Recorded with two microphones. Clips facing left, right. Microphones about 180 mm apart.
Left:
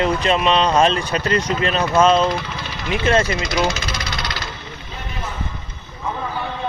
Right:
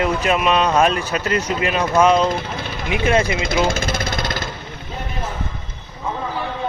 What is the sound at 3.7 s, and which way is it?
Vehicle, 50° right (ahead or behind).